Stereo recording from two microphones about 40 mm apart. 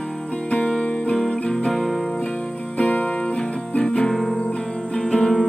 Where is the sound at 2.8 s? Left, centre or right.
Left.